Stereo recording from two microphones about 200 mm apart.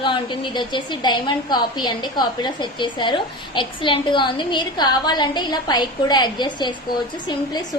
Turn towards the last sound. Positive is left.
turn(degrees=20)  # may be behind; listen again after turning